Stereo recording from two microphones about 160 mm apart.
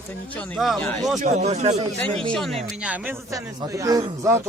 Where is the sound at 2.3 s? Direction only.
Centre (ahead or behind).